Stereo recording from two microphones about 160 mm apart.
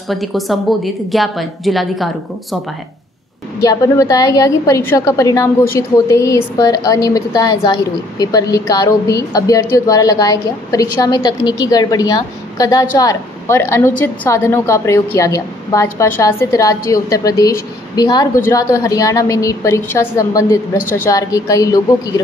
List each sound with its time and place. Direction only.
0.1 s a woman's voice: centre (ahead or behind)
3.6 s a woman's voice: 20° left (ahead or behind)